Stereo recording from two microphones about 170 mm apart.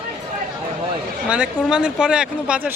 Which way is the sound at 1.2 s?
5° right (ahead or behind).